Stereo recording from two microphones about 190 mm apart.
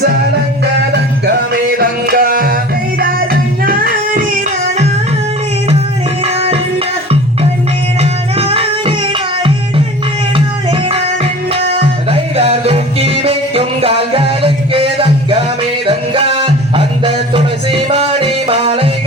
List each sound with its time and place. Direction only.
0.6 s music: 60° right (ahead or behind)
3.6 s music: 50° right (ahead or behind)
6.2 s music: 30° right (ahead or behind)
8.4 s music: 30° right (ahead or behind)
10.3 s music: 30° right (ahead or behind)